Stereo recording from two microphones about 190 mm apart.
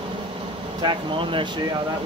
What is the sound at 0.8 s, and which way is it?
Speech, 25° right (ahead or behind).